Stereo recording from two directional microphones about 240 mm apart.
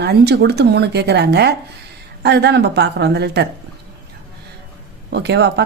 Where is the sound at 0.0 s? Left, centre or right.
Right.